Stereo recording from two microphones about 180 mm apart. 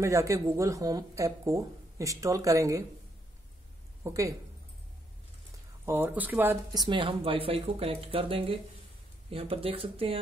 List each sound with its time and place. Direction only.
0.0 s speech: 15° right (ahead or behind)
4.0 s speech: 15° right (ahead or behind)
5.9 s speech: 10° right (ahead or behind)
6.8 s speech: 30° right (ahead or behind)